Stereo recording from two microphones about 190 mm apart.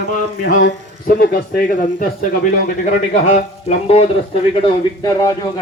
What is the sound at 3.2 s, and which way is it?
Speech, 35° left (ahead or behind).